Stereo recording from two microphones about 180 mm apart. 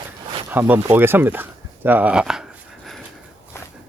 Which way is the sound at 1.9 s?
10° right (ahead or behind).